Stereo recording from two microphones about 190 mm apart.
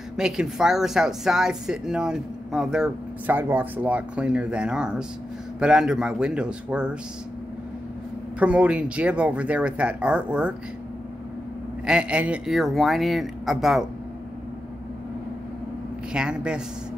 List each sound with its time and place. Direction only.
0.2 s a woman's voice: 5° right (ahead or behind)
8.4 s speech: 5° right (ahead or behind)
11.8 s a woman's voice: 5° right (ahead or behind)
16.1 s a woman's voice: 5° right (ahead or behind)